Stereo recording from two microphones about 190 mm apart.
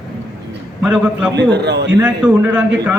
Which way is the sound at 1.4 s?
65° right (ahead or behind).